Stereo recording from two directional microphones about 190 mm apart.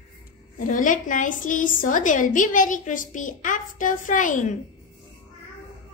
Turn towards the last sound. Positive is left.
turn(degrees=40)  # may be behind; listen again after turning